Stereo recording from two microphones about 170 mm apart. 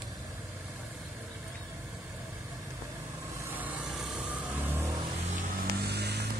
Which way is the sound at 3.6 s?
5° right (ahead or behind).